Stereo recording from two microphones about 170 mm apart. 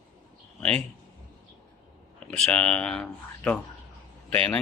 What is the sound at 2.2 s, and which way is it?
Speech, 5° left (ahead or behind).